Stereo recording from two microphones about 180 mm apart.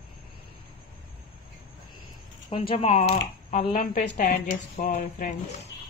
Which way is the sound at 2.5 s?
30° left (ahead or behind).